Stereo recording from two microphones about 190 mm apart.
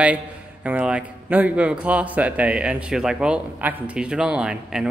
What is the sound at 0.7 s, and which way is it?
A man's voice, 5° right (ahead or behind).